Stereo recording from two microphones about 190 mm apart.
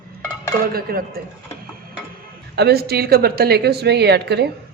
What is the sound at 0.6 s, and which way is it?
Speech, 50° right (ahead or behind).